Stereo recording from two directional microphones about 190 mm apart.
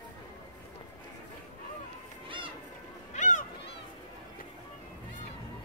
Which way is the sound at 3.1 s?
40° left (ahead or behind).